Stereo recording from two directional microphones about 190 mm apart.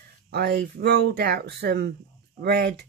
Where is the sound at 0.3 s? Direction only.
55° right (ahead or behind).